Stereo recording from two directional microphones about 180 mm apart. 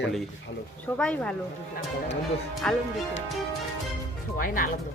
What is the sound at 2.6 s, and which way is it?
Speech, 5° left (ahead or behind).